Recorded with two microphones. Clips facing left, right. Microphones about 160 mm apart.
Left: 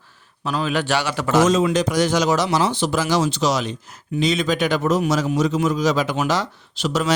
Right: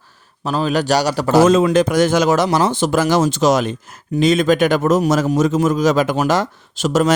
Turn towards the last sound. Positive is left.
turn(degrees=-45)  # may be behind; listen again after turning